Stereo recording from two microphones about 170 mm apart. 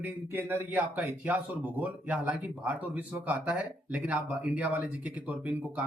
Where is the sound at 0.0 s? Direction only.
10° right (ahead or behind).